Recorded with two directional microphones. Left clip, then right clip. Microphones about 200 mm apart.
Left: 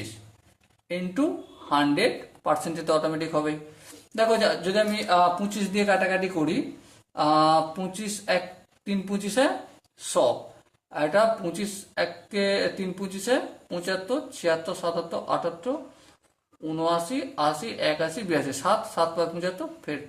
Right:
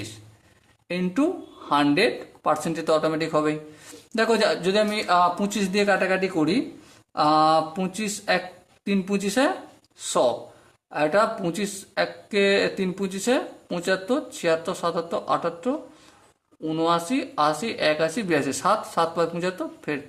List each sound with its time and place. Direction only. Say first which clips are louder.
0.9 s speech: right 3 dB; 40° right (ahead or behind)